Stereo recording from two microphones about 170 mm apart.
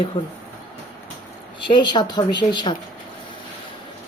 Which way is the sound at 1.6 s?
25° left (ahead or behind).